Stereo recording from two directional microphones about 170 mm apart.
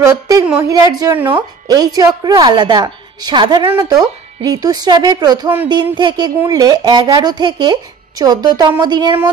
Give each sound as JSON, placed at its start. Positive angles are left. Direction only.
{"t": 0.0, "sound": "a woman's voice", "side_deg": -20}